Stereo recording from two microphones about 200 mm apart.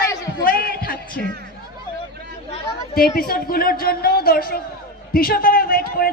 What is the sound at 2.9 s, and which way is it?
Speech, 50° left (ahead or behind).